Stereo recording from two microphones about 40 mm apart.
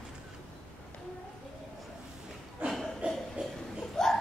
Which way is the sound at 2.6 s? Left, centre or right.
Right.